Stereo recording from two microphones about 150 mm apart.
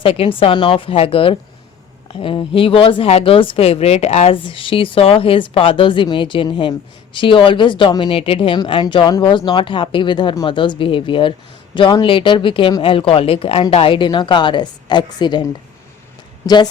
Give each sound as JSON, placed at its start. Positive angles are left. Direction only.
{"t": 0.0, "sound": "speech", "side_deg": 40}